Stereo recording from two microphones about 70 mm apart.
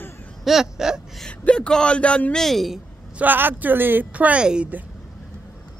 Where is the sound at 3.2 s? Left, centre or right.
Right.